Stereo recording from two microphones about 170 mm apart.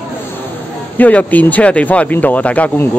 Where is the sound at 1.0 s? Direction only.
10° left (ahead or behind).